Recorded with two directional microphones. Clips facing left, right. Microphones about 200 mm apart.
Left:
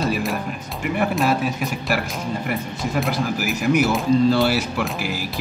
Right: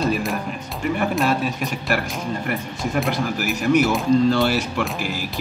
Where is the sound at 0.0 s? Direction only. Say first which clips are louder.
Right 1 dB; centre (ahead or behind).